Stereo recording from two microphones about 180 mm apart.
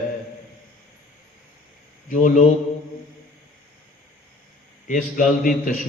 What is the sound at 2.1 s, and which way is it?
Speech, 45° left (ahead or behind).